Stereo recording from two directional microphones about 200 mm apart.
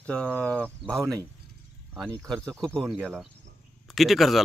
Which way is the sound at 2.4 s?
5° left (ahead or behind).